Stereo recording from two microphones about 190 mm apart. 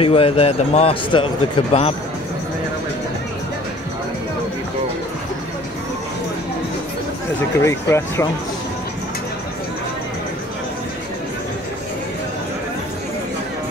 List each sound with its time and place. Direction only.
0.0 s a man's voice: 30° left (ahead or behind)
7.6 s speech: 15° left (ahead or behind)